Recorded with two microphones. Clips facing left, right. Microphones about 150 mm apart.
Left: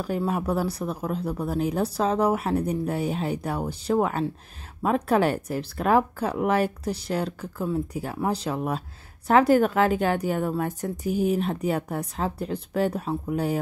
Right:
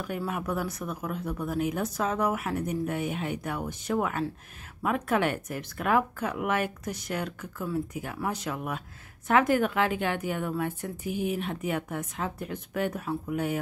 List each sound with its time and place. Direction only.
0.0 s speech: 30° left (ahead or behind)